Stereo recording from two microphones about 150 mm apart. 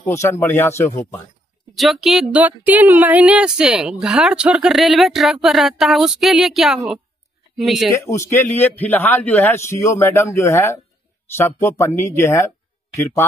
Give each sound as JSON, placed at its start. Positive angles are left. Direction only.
{"t": 0.1, "sound": "a man's voice", "side_deg": 20}
{"t": 1.8, "sound": "speech", "side_deg": 0}
{"t": 8.1, "sound": "a man's voice", "side_deg": 20}